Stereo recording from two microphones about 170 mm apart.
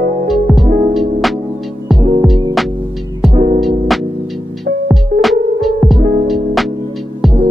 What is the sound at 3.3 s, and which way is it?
Music, 45° right (ahead or behind).